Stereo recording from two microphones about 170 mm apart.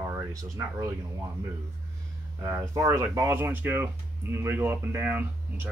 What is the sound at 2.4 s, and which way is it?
Speech, 15° right (ahead or behind).